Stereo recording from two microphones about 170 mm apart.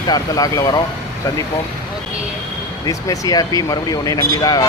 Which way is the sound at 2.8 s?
20° left (ahead or behind).